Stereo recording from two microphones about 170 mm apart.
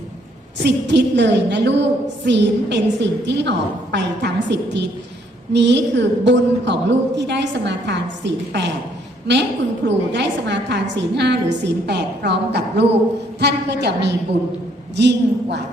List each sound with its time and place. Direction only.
0.6 s a woman's voice: 90° right